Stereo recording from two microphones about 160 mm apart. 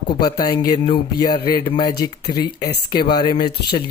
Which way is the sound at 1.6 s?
25° left (ahead or behind).